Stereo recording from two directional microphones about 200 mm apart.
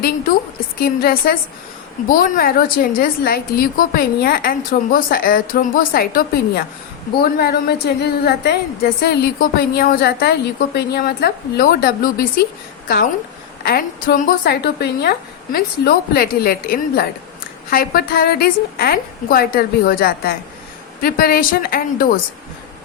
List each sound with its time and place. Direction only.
0.8 s a woman's voice: 50° left (ahead or behind)
13.7 s a woman's voice: 50° left (ahead or behind)